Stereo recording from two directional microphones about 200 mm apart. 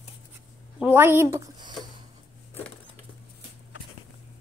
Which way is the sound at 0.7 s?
10° right (ahead or behind).